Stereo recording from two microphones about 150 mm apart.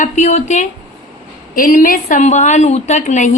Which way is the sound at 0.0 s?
50° left (ahead or behind).